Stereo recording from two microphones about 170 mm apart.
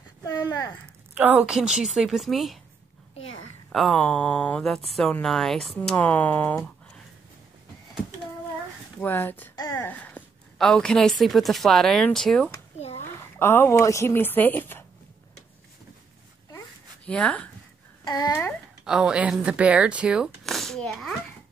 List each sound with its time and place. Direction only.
0.2 s speech: 20° left (ahead or behind)
1.1 s speech: 10° right (ahead or behind)
3.7 s speech: 5° left (ahead or behind)
9.0 s a woman's voice: 10° left (ahead or behind)
12.7 s a sound: 40° left (ahead or behind)
13.1 s speech: 15° left (ahead or behind)
16.5 s a sound: 5° left (ahead or behind)
18.0 s a child's voice: 20° left (ahead or behind)
18.9 s speech: 5° right (ahead or behind)